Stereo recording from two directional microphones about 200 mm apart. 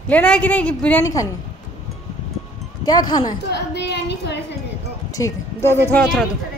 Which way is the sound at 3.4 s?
60° left (ahead or behind).